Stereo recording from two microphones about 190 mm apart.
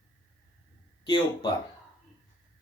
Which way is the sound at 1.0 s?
25° left (ahead or behind).